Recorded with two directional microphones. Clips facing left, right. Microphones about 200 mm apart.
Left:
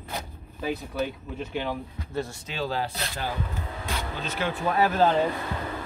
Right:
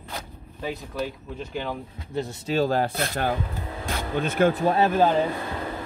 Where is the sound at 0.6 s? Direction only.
Centre (ahead or behind).